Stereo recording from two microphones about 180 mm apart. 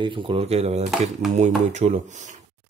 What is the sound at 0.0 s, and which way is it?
Speech, 25° right (ahead or behind).